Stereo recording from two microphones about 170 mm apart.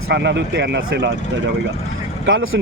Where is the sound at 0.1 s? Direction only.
90° right.